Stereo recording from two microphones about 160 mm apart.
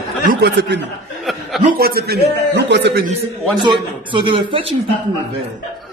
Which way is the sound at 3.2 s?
30° right (ahead or behind).